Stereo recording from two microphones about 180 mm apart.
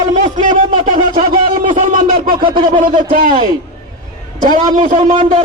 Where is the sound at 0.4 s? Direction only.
45° right (ahead or behind).